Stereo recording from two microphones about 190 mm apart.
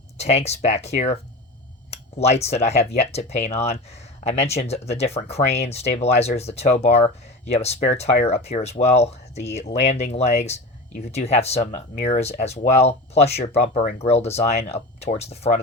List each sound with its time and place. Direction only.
0.2 s speech: 35° left (ahead or behind)